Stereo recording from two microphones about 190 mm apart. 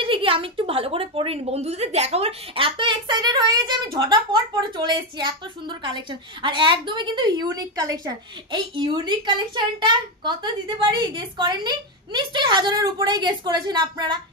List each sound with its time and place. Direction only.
0.0 s a woman's voice: 30° right (ahead or behind)